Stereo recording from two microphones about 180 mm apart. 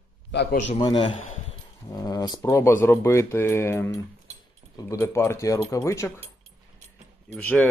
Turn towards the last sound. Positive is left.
turn(degrees=10)  # may be behind; listen again after turning